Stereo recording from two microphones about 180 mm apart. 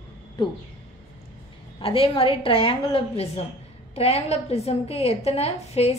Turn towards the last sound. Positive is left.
turn(degrees=35)  # may be behind; listen again after turning